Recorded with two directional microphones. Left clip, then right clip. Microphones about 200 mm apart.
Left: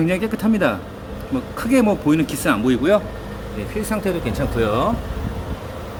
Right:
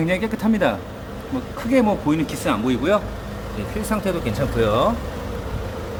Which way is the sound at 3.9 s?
5° left (ahead or behind).